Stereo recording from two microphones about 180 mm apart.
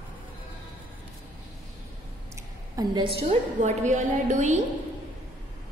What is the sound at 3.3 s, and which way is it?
A woman's voice, 40° right (ahead or behind).